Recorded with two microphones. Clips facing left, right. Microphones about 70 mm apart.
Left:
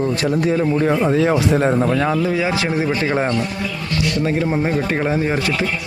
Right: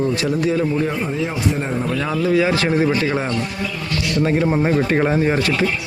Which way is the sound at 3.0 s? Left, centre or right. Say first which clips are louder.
Left 2 dB; left.